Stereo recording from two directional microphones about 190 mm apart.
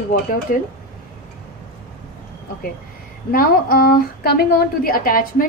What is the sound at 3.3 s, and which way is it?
A woman's voice, 50° left (ahead or behind).